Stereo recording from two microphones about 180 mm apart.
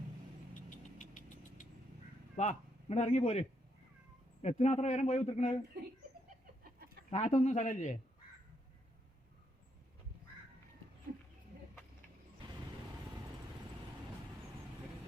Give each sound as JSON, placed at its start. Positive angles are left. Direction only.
{"t": 0.9, "sound": "vehicle", "side_deg": 45}
{"t": 2.3, "sound": "a man's voice", "side_deg": 40}
{"t": 4.4, "sound": "a man's voice", "side_deg": 40}
{"t": 6.7, "sound": "chicken", "side_deg": -60}
{"t": 7.1, "sound": "a man's voice", "side_deg": 40}